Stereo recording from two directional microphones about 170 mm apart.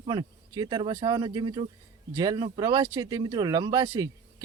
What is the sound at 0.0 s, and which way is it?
Speech, 25° right (ahead or behind).